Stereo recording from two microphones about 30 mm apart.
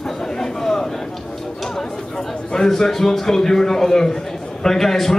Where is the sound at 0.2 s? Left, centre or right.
Centre.